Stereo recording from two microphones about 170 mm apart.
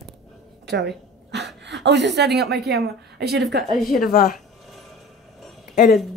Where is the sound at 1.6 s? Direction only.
90° right.